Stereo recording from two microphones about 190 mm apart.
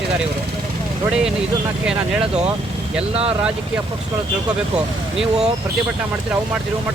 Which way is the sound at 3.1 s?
30° right (ahead or behind).